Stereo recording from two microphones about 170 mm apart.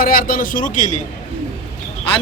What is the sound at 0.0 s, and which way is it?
Speech, 55° left (ahead or behind).